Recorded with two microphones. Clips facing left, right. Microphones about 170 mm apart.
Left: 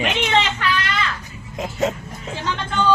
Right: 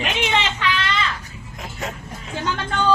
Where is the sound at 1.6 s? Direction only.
20° left (ahead or behind).